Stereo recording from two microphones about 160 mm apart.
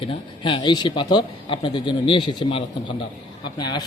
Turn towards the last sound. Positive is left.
turn(degrees=25)  # may be behind; listen again after turning